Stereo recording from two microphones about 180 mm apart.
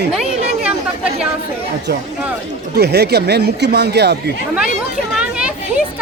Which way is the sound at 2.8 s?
65° right (ahead or behind).